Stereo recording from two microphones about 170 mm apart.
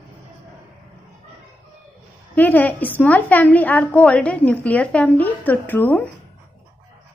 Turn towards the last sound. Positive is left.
turn(degrees=10)  # may be behind; listen again after turning